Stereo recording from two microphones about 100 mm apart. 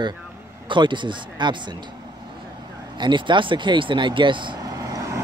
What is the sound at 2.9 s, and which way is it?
Speech, 50° right (ahead or behind).